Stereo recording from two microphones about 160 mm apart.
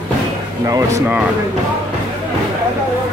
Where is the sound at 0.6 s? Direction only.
20° right (ahead or behind).